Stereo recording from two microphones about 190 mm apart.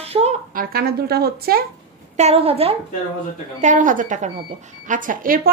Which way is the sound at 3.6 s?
40° right (ahead or behind).